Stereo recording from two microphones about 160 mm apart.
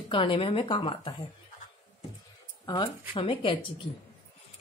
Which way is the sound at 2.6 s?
25° left (ahead or behind).